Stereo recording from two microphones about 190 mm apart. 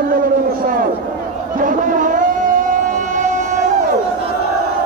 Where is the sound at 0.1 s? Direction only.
50° right (ahead or behind).